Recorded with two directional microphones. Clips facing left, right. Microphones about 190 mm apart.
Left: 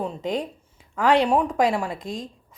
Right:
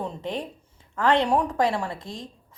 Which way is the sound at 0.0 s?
10° left (ahead or behind).